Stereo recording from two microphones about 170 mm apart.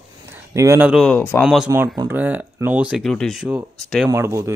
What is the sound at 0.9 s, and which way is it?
Speech, centre (ahead or behind).